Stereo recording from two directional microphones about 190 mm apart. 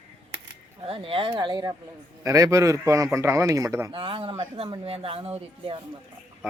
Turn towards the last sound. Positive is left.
turn(degrees=-30)  # may be behind; listen again after turning